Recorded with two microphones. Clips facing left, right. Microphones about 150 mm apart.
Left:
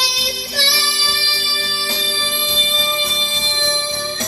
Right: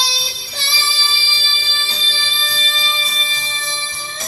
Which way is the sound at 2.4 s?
20° left (ahead or behind).